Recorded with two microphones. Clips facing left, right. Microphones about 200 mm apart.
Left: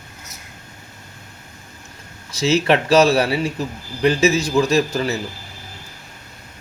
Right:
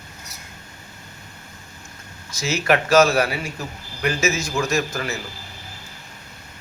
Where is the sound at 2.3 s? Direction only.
30° left (ahead or behind).